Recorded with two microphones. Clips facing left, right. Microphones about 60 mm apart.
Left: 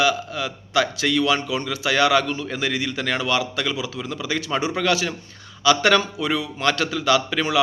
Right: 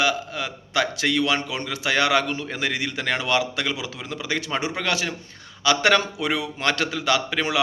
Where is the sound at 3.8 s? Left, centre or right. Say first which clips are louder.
Left 3 dB; right.